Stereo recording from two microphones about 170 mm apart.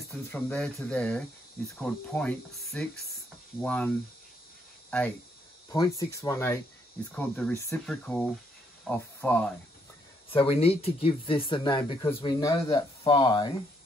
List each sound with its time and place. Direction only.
0.3 s speech: 5° left (ahead or behind)
5.7 s speech: 20° left (ahead or behind)
10.3 s speech: 35° left (ahead or behind)